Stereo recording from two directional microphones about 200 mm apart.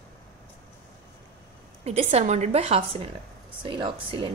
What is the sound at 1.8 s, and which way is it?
A woman's voice, 30° right (ahead or behind).